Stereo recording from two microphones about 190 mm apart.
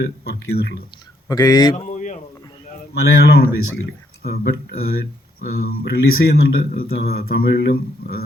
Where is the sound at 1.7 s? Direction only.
40° left (ahead or behind).